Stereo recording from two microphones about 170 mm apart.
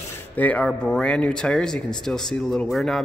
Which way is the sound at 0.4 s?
10° left (ahead or behind).